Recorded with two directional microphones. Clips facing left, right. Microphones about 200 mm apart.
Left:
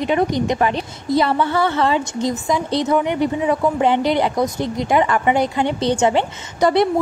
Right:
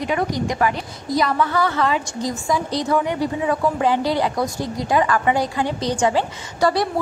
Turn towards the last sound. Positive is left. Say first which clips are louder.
# left 3 dB
turn(degrees=20)  # may be behind; listen again after turning